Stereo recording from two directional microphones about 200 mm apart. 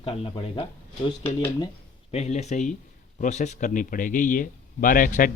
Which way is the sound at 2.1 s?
30° left (ahead or behind).